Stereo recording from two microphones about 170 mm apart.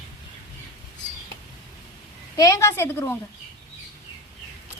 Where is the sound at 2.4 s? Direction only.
15° left (ahead or behind).